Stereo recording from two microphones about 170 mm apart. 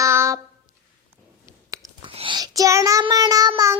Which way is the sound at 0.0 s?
15° right (ahead or behind).